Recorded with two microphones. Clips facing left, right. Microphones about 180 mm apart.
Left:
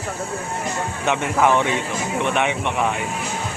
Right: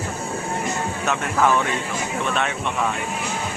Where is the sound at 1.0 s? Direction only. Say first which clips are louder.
Left 2 dB; 20° left (ahead or behind).